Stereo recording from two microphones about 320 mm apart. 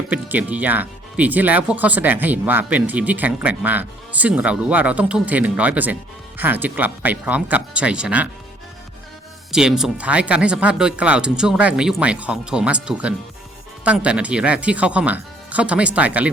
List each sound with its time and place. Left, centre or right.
0.1 s speech: centre
9.5 s speech: centre